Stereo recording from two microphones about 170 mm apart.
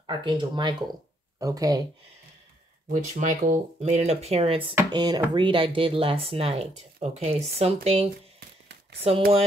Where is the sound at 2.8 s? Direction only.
50° right (ahead or behind).